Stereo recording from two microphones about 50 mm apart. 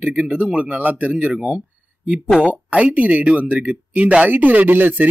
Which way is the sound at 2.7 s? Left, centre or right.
Right.